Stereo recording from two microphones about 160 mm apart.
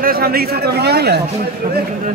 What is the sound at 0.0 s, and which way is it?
A man's voice, 70° right (ahead or behind).